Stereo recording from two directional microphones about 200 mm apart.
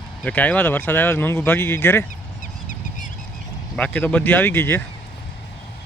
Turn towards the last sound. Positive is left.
turn(degrees=10)  # may be behind; listen again after turning